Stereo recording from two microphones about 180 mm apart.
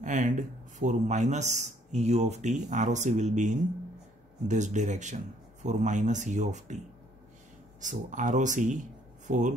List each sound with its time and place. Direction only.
0.0 s speech: 45° right (ahead or behind)
7.8 s speech: 45° right (ahead or behind)